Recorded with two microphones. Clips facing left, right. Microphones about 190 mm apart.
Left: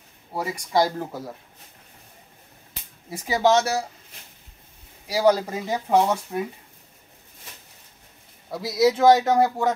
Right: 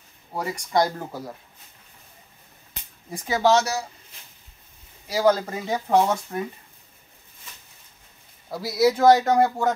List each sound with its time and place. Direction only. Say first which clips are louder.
0.3 s speech: even; 5° left (ahead or behind)
3.1 s speech: even; 10° left (ahead or behind)
5.0 s speech: left 1 dB; 10° left (ahead or behind)
8.5 s speech: even; centre (ahead or behind)